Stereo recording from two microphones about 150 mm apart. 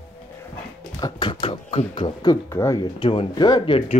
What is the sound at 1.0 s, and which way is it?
Speech, 30° left (ahead or behind).